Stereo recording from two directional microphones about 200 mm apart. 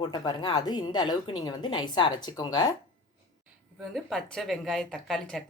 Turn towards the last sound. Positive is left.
turn(degrees=0)  # may be behind; listen again after turning